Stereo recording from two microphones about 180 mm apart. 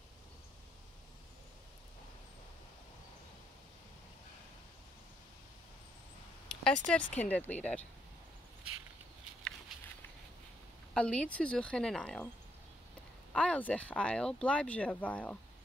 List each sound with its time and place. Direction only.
6.6 s speech: 5° left (ahead or behind)
11.0 s a woman's voice: 5° left (ahead or behind)
13.3 s speech: 5° left (ahead or behind)